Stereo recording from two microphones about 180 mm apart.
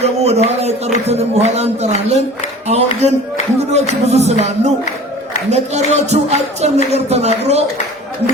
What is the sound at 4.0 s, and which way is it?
Music, 40° right (ahead or behind).